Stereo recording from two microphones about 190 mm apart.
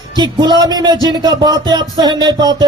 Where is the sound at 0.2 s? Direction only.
25° right (ahead or behind).